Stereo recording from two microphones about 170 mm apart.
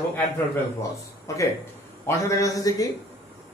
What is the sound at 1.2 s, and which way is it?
Speech, 20° left (ahead or behind).